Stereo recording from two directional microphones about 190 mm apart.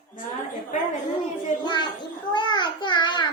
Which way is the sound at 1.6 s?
25° left (ahead or behind).